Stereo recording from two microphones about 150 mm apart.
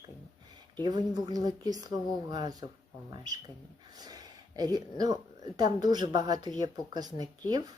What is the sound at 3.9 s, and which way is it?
Speech, 25° right (ahead or behind).